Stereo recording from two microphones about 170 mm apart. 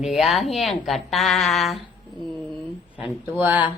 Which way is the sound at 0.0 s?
Centre (ahead or behind).